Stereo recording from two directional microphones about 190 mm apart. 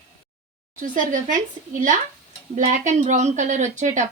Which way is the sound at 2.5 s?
40° right (ahead or behind).